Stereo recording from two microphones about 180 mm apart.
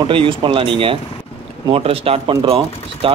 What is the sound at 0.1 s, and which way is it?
Speech, 30° right (ahead or behind).